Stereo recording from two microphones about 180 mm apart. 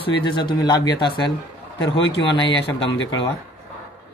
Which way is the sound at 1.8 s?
90° left.